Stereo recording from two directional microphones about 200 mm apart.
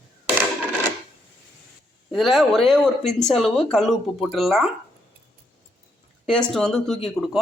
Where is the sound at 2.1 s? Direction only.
Centre (ahead or behind).